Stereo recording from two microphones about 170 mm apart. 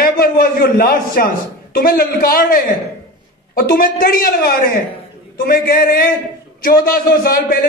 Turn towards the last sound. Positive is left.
turn(degrees=60)  # may be behind; listen again after turning